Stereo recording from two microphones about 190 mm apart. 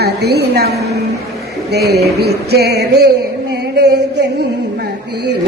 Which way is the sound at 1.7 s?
60° right (ahead or behind).